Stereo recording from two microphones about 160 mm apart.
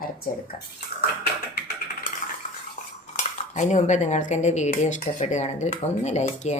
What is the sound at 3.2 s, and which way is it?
Dishes, 50° left (ahead or behind).